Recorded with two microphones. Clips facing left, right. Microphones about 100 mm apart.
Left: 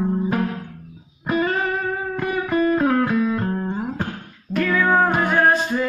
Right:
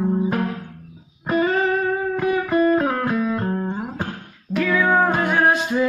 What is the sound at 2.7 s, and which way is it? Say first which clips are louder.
Music: left 1 dB; 15° right (ahead or behind).